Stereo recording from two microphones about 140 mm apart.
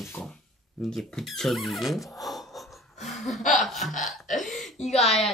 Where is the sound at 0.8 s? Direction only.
Centre (ahead or behind).